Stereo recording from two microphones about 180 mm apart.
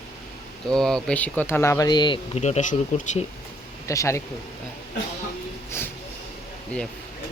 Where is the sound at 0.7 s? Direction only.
5° left (ahead or behind); by 3.2 s 40° left (ahead or behind).